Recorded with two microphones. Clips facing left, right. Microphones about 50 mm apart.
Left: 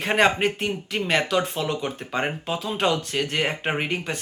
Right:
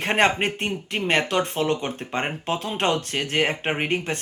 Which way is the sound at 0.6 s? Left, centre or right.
Right.